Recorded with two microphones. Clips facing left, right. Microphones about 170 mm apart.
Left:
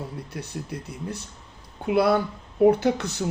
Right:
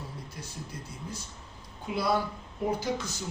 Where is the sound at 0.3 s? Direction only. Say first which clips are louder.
Left 8 dB; 65° left (ahead or behind).